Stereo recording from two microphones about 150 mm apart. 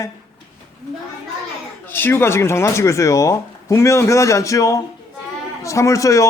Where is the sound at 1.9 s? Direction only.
15° left (ahead or behind).